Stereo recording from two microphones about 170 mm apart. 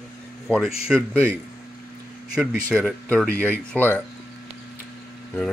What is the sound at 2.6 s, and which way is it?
Speech, 10° left (ahead or behind).